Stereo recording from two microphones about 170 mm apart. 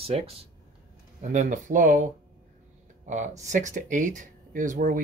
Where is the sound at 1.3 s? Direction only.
50° right (ahead or behind).